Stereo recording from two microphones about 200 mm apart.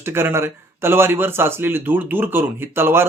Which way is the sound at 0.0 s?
10° right (ahead or behind).